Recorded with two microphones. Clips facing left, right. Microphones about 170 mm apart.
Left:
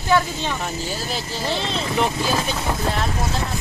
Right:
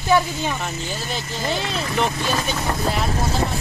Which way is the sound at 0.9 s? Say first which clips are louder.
Left 1 dB; centre (ahead or behind).